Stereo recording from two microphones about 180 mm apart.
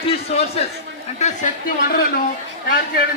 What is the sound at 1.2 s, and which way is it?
Speech, 45° left (ahead or behind).